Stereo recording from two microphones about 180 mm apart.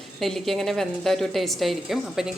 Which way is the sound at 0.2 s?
Centre (ahead or behind).